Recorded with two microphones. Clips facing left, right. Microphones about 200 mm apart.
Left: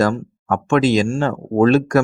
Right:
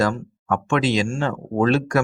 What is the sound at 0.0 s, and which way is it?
Speech, 45° left (ahead or behind).